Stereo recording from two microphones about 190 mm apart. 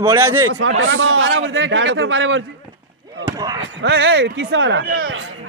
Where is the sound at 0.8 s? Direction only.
90° right.